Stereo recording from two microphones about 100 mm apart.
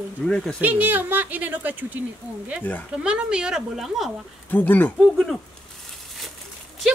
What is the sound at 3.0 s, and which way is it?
Speech, 10° right (ahead or behind).